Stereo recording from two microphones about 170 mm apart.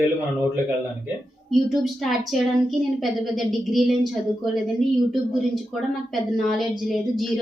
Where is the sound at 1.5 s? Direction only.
Centre (ahead or behind).